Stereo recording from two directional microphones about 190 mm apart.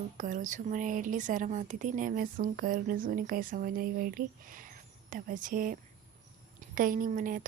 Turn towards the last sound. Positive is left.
turn(degrees=-45)  # may be behind; listen again after turning